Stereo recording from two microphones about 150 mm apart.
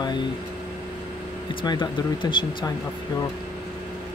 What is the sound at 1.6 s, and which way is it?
Speech, 35° left (ahead or behind).